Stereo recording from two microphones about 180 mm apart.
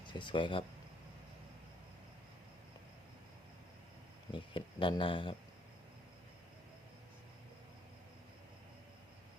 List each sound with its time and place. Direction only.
0.0 s speech: 25° left (ahead or behind)
4.3 s speech: 30° left (ahead or behind)